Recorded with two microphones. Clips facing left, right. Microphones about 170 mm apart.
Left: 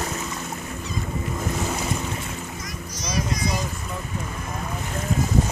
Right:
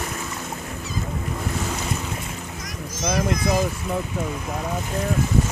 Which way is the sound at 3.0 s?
50° right (ahead or behind).